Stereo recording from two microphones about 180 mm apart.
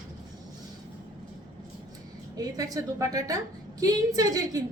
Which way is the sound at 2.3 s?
20° right (ahead or behind).